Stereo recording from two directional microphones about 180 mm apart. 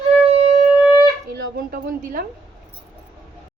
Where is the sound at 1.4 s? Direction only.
55° right (ahead or behind).